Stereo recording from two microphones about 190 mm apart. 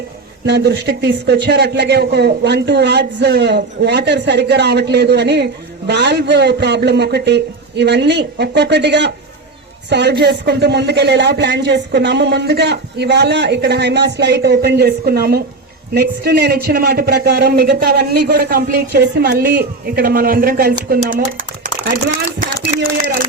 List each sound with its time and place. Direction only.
0.4 s speech: 60° right (ahead or behind); by 21.9 s 45° right (ahead or behind)